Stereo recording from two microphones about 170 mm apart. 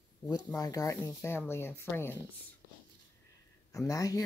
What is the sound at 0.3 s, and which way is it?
Speech, 20° left (ahead or behind).